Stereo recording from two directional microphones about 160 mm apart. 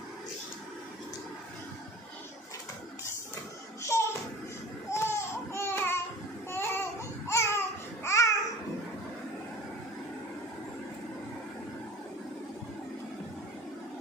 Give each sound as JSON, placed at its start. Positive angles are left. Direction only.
{"t": 3.9, "sound": "babbling", "side_deg": 20}
{"t": 4.9, "sound": "a sound", "side_deg": 15}
{"t": 6.5, "sound": "babbling", "side_deg": 15}